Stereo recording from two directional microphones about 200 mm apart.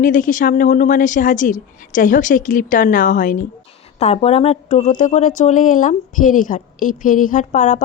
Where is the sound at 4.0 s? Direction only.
30° left (ahead or behind).